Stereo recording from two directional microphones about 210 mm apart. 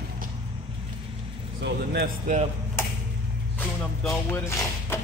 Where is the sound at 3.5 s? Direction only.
5° left (ahead or behind).